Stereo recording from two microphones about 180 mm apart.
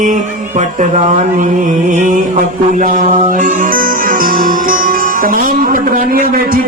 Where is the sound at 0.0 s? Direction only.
45° right (ahead or behind).